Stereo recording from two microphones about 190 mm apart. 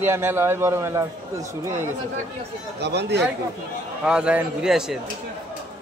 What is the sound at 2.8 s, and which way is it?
Speech, 60° right (ahead or behind).